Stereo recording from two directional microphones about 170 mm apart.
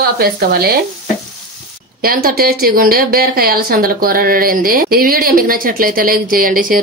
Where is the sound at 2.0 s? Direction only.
60° right (ahead or behind).